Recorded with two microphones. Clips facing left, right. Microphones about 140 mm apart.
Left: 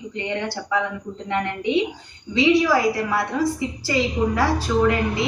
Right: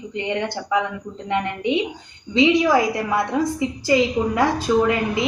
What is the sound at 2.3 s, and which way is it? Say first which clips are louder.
A woman's voice: right 1 dB; 20° right (ahead or behind).